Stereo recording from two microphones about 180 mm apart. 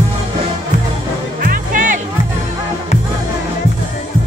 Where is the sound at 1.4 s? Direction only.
50° right (ahead or behind).